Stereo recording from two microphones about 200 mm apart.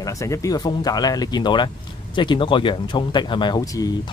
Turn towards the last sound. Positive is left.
turn(degrees=15)  # may be behind; listen again after turning